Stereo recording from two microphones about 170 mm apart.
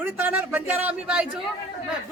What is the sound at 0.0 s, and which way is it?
Speech, 10° right (ahead or behind).